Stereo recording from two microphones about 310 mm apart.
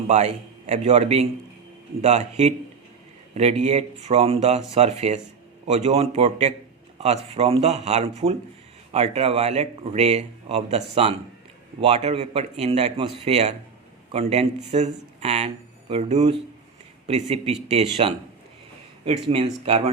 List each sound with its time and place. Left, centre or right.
0.1 s speech: right
19.6 s speech: centre